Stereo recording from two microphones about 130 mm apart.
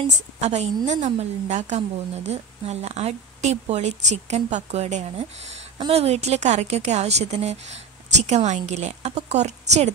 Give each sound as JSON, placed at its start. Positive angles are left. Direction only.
{"t": 0.4, "sound": "a woman's voice", "side_deg": -55}